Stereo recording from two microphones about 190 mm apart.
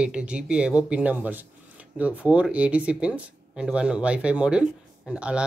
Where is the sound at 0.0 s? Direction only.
5° right (ahead or behind).